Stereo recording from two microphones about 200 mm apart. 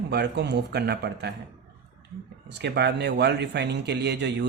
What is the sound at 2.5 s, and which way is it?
A man's voice, 60° right (ahead or behind).